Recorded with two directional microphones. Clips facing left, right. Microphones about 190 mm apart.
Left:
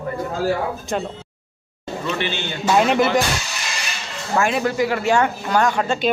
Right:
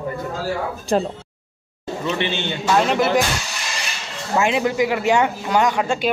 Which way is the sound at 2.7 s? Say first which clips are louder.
Left 2 dB; 5° left (ahead or behind).